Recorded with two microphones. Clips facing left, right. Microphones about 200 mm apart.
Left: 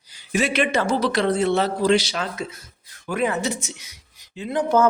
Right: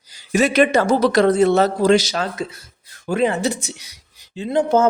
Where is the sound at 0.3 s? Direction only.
40° right (ahead or behind).